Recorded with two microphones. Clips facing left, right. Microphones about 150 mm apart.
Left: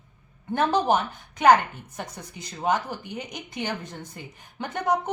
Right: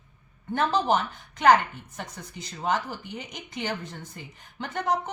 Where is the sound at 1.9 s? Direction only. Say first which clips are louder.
Left 2 dB; 15° left (ahead or behind).